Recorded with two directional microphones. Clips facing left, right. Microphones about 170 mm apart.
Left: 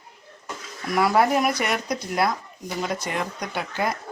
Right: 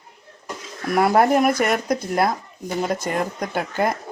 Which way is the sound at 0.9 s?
50° right (ahead or behind).